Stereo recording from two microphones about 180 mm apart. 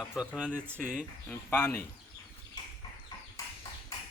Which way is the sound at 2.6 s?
20° left (ahead or behind).